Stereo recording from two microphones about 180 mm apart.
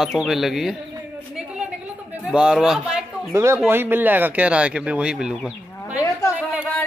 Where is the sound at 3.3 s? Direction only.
15° right (ahead or behind).